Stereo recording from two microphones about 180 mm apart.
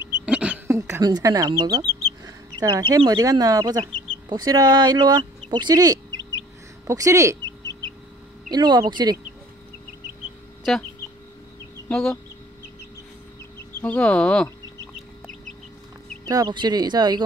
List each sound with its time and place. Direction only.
0.2 s speech: 5° right (ahead or behind)
8.5 s speech: 25° right (ahead or behind)
11.9 s speech: 5° left (ahead or behind)
13.7 s speech: 5° left (ahead or behind)
16.3 s speech: 25° right (ahead or behind)